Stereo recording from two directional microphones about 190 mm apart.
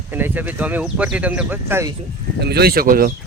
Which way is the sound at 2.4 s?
55° right (ahead or behind).